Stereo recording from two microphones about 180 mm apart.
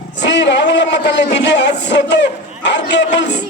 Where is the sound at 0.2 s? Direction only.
75° left (ahead or behind).